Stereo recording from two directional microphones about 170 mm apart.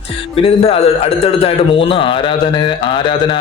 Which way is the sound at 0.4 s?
35° left (ahead or behind).